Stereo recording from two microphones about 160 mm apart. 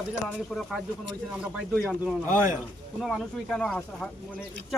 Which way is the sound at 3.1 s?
5° left (ahead or behind).